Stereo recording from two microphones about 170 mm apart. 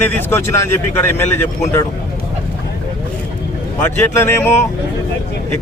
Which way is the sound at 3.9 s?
15° left (ahead or behind).